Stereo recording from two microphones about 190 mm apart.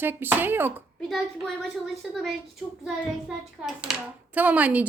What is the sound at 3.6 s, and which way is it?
A woman's voice, 5° right (ahead or behind).